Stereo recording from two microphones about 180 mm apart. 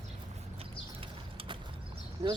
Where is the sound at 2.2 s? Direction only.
35° right (ahead or behind).